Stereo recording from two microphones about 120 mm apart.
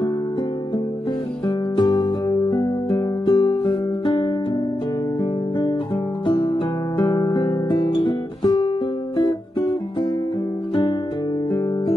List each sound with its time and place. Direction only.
1.8 s music: 35° left (ahead or behind)
6.2 s music: 40° left (ahead or behind)